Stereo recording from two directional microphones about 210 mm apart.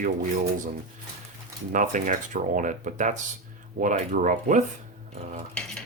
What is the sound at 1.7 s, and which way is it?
Speech, 40° right (ahead or behind).